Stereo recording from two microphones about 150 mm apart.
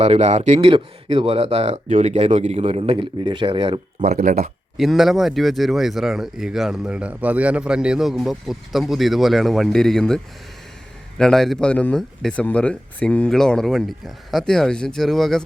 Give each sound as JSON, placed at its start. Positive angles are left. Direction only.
{"t": 0.0, "sound": "speech", "side_deg": -50}
{"t": 4.0, "sound": "speech", "side_deg": -55}
{"t": 4.8, "sound": "speech", "side_deg": 0}
{"t": 11.2, "sound": "speech", "side_deg": 5}